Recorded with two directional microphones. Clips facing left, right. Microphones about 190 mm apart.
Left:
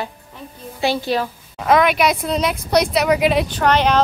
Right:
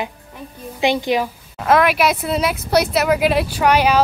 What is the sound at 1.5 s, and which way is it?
Speech, centre (ahead or behind).